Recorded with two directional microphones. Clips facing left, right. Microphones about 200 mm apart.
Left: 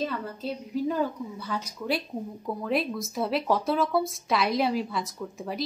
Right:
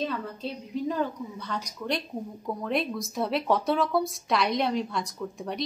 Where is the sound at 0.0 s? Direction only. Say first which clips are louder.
Even; centre (ahead or behind).